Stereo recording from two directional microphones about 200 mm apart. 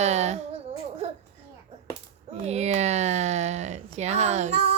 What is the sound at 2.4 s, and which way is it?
Speech, 35° right (ahead or behind).